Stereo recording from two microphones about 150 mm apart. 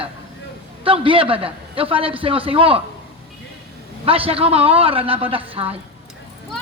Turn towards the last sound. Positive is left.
turn(degrees=-40)  # may be behind; listen again after turning